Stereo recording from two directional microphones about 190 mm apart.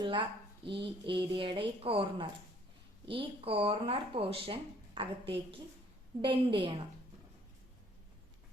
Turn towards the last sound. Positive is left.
turn(degrees=-25)  # may be behind; listen again after turning